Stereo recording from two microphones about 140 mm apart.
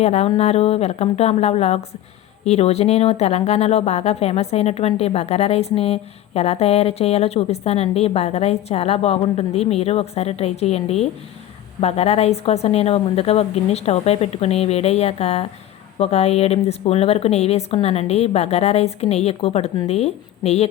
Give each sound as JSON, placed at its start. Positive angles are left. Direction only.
{"t": 0.0, "sound": "speech", "side_deg": 50}